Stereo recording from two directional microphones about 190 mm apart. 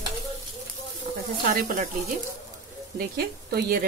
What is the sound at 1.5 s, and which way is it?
Speech, 45° right (ahead or behind).